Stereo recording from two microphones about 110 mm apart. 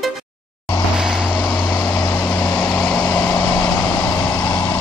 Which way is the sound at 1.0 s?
5° right (ahead or behind).